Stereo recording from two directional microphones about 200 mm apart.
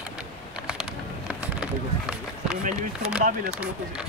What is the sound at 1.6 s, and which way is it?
Run, 5° right (ahead or behind).